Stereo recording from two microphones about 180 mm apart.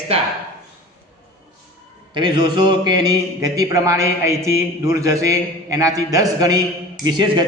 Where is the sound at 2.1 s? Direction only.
25° right (ahead or behind).